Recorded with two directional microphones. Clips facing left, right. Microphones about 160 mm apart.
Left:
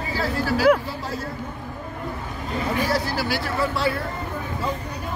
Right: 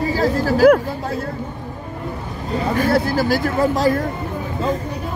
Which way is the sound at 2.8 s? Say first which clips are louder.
Right 8 dB; 55° right (ahead or behind).